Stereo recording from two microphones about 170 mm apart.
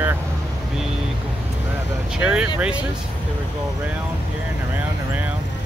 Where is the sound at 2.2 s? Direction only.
5° right (ahead or behind).